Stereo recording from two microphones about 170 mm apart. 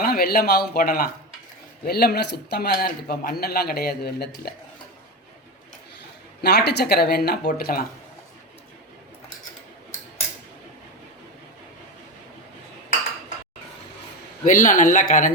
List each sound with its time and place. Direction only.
0.0 s a man's voice: 60° left (ahead or behind)
6.4 s speech: 70° left (ahead or behind)
14.4 s speech: 50° left (ahead or behind)